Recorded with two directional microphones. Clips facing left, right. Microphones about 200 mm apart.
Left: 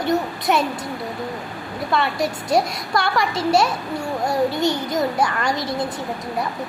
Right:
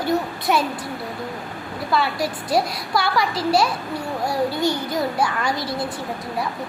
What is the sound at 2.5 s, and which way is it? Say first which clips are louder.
Speech: left 1 dB; 5° right (ahead or behind).